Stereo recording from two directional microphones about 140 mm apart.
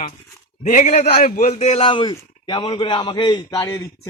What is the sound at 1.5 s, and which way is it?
A man's voice, 50° left (ahead or behind).